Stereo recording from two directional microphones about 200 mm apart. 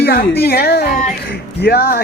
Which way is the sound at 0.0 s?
50° left (ahead or behind).